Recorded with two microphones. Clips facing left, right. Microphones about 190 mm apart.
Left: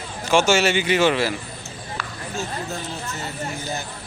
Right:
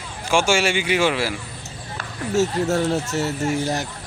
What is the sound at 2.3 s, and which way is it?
Speech, 80° right.